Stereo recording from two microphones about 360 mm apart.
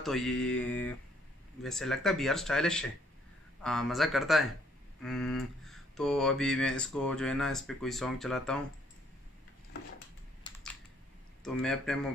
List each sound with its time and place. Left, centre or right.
0.0 s speech: centre
11.4 s speech: centre